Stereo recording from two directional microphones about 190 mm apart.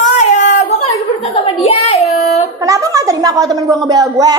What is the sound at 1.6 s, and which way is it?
Child singing, 35° left (ahead or behind).